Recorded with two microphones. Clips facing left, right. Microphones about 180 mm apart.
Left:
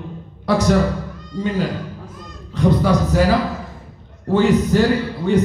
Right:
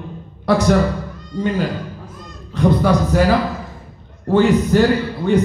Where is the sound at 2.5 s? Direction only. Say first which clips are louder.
Right 1 dB; 55° right (ahead or behind).